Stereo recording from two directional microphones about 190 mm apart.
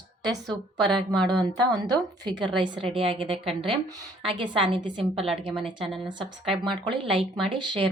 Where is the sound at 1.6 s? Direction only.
20° right (ahead or behind).